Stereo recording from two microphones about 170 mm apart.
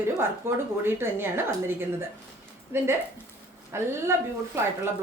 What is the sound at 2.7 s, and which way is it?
A woman's voice, 15° right (ahead or behind).